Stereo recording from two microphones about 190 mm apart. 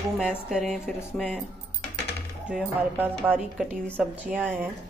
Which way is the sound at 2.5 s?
5° right (ahead or behind).